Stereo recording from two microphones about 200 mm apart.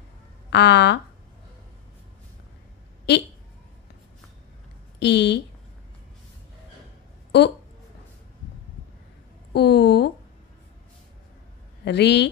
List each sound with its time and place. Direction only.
0.5 s speech: 60° left (ahead or behind)
3.1 s speech: 60° left (ahead or behind)
4.9 s speech: 60° left (ahead or behind)
9.5 s speech: 55° left (ahead or behind)
11.8 s speech: 60° left (ahead or behind)